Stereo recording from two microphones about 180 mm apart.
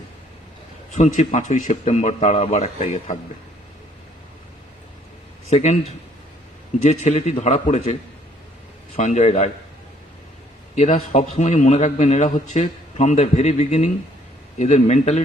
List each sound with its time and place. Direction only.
0.9 s a man's voice: 40° left (ahead or behind)
5.5 s a man's voice: 35° left (ahead or behind)
9.0 s a man's voice: 40° left (ahead or behind)
10.8 s a man's voice: 35° left (ahead or behind)